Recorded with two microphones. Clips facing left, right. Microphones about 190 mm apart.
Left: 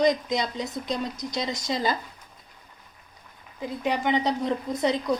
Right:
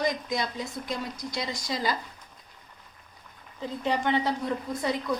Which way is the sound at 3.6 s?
15° left (ahead or behind).